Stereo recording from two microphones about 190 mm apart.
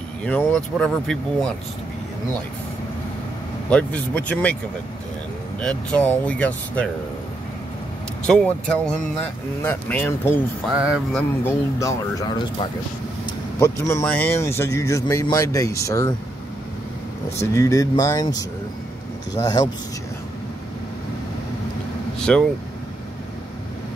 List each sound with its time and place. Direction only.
0.2 s speech: 10° left (ahead or behind)
3.7 s speech: 5° left (ahead or behind)
5.6 s speech: 5° left (ahead or behind)
8.3 s speech: 5° left (ahead or behind)
10.7 s speech: 5° right (ahead or behind)
11.1 s speech: 15° left (ahead or behind)
17.4 s speech: 15° left (ahead or behind)
22.3 s speech: 5° left (ahead or behind)